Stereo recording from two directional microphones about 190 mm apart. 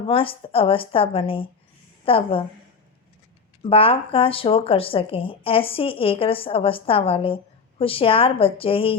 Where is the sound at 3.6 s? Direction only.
30° left (ahead or behind).